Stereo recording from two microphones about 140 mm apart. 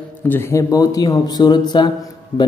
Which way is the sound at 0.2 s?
15° left (ahead or behind).